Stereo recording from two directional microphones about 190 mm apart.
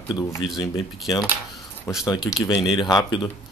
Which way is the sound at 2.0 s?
20° left (ahead or behind).